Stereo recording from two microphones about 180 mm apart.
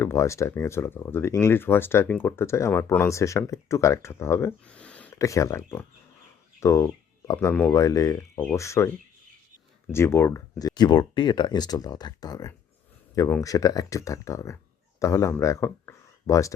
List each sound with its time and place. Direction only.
0.0 s speech: 15° left (ahead or behind)
9.9 s speech: 15° left (ahead or behind)